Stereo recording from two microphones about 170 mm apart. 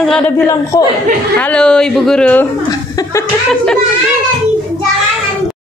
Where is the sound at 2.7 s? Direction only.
20° left (ahead or behind).